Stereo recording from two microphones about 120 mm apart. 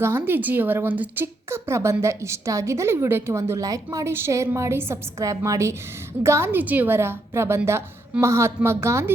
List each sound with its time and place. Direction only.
0.0 s a woman's voice: 20° right (ahead or behind)